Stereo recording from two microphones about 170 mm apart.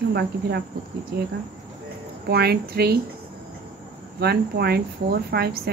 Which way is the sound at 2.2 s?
70° right (ahead or behind).